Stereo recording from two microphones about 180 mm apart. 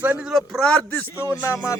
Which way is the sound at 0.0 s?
5° right (ahead or behind).